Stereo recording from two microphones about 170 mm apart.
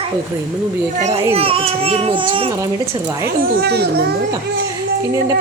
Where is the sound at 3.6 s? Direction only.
70° right (ahead or behind).